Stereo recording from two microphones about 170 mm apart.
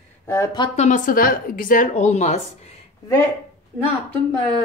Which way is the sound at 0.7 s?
45° left (ahead or behind).